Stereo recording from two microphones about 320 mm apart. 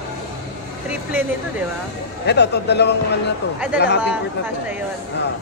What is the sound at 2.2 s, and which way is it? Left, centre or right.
A woman's voice, left.